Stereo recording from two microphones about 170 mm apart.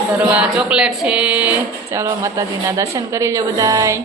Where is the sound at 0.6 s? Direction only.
5° right (ahead or behind).